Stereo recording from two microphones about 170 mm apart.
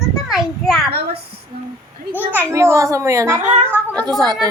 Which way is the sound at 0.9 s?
65° right (ahead or behind).